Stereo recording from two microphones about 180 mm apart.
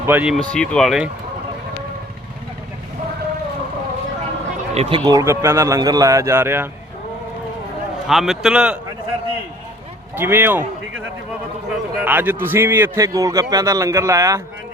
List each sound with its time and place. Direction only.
0.0 s a man's voice: 10° right (ahead or behind)
0.5 s a man's voice: 5° left (ahead or behind)
4.7 s a man's voice: 35° right (ahead or behind); by 6.7 s 15° right (ahead or behind)
8.0 s a man's voice: centre (ahead or behind)
10.2 s a man's voice: 10° right (ahead or behind)
11.9 s a man's voice: 10° right (ahead or behind)